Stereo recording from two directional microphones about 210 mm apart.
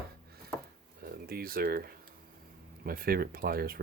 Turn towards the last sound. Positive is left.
turn(degrees=-45)  # may be behind; listen again after turning